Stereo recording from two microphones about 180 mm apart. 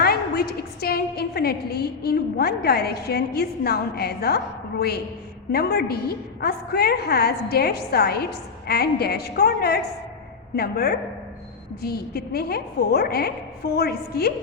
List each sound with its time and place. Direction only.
0.0 s a woman's voice: 60° left (ahead or behind)